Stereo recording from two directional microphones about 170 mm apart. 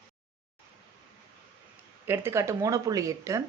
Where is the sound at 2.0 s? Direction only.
15° right (ahead or behind).